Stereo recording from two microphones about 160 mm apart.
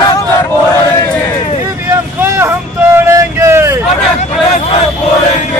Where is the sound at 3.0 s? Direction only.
20° right (ahead or behind).